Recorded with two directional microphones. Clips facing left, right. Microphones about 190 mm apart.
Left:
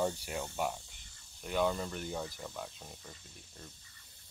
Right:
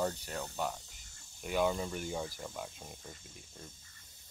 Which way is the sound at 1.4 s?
5° right (ahead or behind).